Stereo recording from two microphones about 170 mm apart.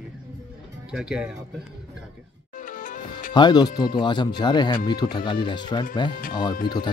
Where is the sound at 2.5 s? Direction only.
50° left (ahead or behind).